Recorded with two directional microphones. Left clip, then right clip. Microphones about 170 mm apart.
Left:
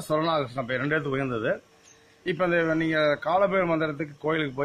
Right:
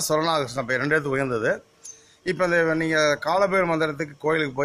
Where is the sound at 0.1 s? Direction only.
15° right (ahead or behind).